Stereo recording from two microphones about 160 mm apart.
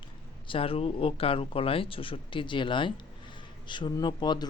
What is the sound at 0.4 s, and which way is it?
A woman's voice, 35° left (ahead or behind).